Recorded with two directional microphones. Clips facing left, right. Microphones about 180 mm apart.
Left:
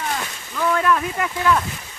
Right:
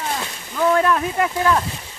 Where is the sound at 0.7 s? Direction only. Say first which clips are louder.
Even; 30° right (ahead or behind).